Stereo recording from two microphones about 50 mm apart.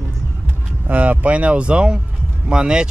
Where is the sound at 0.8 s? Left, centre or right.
Right.